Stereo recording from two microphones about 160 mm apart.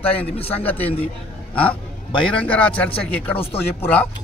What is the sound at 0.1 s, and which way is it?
Speech, 35° left (ahead or behind).